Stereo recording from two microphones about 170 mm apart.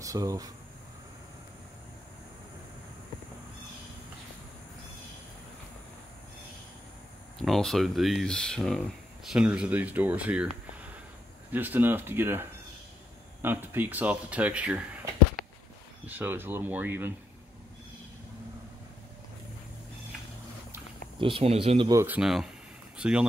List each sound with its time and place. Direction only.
0.0 s speech: 20° right (ahead or behind)
7.3 s speech: centre (ahead or behind)
11.5 s speech: 10° right (ahead or behind)
16.1 s speech: 10° right (ahead or behind)
21.2 s speech: 35° right (ahead or behind)
21.9 s speech: 10° right (ahead or behind)